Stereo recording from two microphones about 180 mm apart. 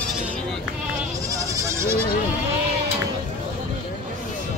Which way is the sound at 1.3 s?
15° right (ahead or behind).